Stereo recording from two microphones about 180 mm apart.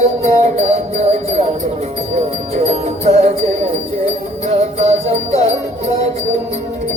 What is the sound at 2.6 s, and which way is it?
Music, 35° right (ahead or behind).